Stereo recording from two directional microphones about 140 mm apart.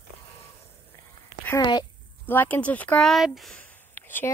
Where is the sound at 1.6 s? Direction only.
30° left (ahead or behind).